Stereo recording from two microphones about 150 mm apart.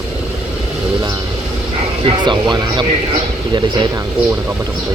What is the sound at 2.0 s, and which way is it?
Speech, 30° right (ahead or behind).